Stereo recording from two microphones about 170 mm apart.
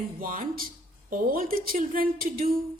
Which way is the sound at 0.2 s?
55° right (ahead or behind).